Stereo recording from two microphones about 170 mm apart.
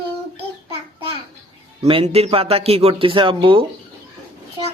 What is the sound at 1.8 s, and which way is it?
A man's voice, 35° right (ahead or behind).